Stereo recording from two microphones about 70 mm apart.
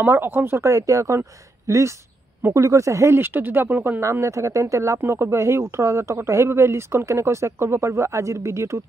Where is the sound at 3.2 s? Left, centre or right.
Right.